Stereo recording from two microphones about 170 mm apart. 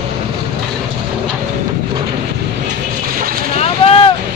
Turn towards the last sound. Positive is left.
turn(degrees=35)  # may be behind; listen again after turning